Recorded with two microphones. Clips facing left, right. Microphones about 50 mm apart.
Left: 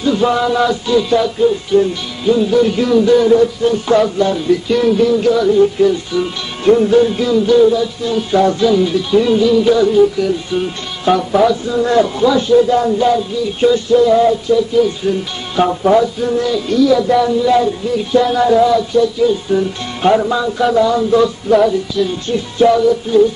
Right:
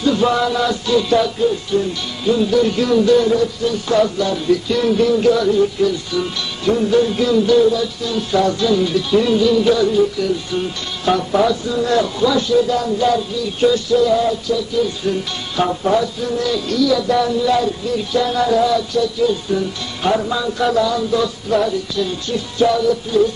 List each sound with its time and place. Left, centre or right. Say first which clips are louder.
0.0 s speech: left 2 dB; centre
3.3 s music: left 6 dB; left
4.5 s speech: left 1 dB; centre; by 8.6 s left
8.6 s speech: left 3 dB; centre
11.6 s music: left 4 dB; left
13.0 s speech: left 3 dB; centre
14.0 s music: left 6 dB; centre
14.8 s speech: left 4 dB; centre
20.8 s music: left 6 dB; left
21.5 s speech: left 4 dB; centre
22.3 s music: left 4 dB; left